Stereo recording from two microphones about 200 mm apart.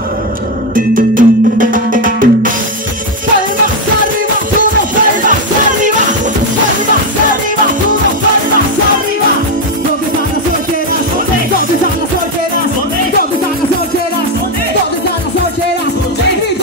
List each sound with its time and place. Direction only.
0.7 s drum: 40° right (ahead or behind)